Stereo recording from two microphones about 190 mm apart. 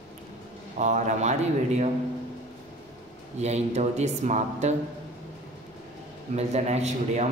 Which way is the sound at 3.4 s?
35° right (ahead or behind).